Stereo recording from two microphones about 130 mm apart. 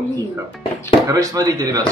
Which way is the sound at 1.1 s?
25° right (ahead or behind).